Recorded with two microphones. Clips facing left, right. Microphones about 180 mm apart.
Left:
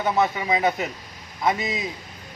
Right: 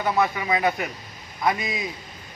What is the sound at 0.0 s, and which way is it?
A man's voice, 20° left (ahead or behind).